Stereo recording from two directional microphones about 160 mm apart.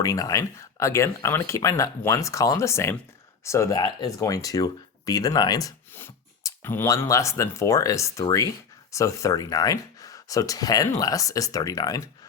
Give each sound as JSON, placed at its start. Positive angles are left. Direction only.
{"t": 0.0, "sound": "speech", "side_deg": 20}